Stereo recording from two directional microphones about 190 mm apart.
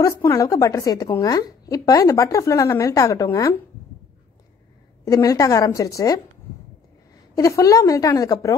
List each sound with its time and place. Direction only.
0.0 s a woman's voice: 15° left (ahead or behind)
5.0 s a woman's voice: 20° left (ahead or behind)
7.3 s a woman's voice: 20° left (ahead or behind)